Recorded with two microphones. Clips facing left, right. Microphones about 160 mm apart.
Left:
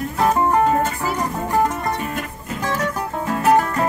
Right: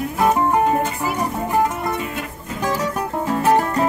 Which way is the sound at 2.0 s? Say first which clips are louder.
Left 1 dB; 20° right (ahead or behind).